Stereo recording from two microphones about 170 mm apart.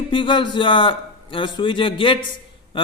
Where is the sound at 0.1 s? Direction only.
30° left (ahead or behind).